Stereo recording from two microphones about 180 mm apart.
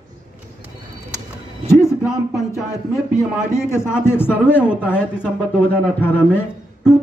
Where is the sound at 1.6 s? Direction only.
15° left (ahead or behind).